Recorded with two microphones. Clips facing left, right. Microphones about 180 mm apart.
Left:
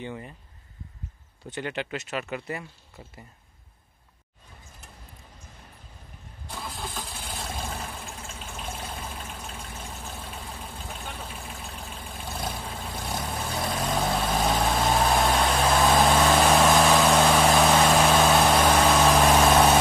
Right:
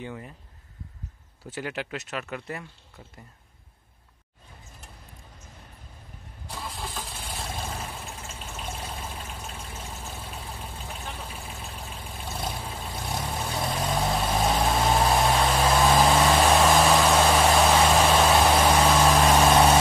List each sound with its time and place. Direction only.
0.0 s speech: centre (ahead or behind)
1.5 s speech: 5° right (ahead or behind)
6.4 s engine starting: centre (ahead or behind)
9.6 s a sound: centre (ahead or behind)
11.6 s vehicle: centre (ahead or behind)